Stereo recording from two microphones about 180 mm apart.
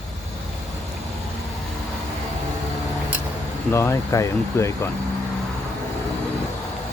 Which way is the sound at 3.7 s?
15° left (ahead or behind).